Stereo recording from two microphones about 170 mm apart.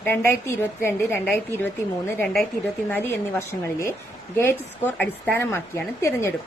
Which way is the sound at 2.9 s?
15° left (ahead or behind).